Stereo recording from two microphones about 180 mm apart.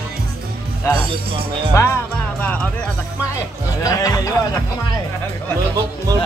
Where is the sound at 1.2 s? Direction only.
30° right (ahead or behind).